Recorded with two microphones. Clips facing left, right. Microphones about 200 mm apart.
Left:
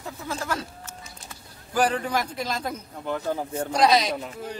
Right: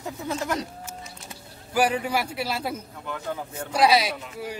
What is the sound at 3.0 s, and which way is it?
Speech, 35° left (ahead or behind).